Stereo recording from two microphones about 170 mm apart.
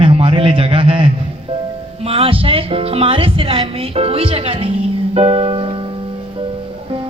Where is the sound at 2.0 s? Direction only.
35° right (ahead or behind).